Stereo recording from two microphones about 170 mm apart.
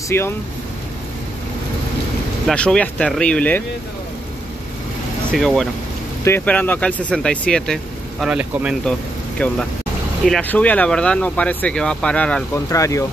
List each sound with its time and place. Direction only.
0.1 s speech: 15° left (ahead or behind)
2.4 s speech: 5° left (ahead or behind)
5.3 s speech: centre (ahead or behind)
9.4 s speech: 10° left (ahead or behind)
12.5 s speech: 20° left (ahead or behind)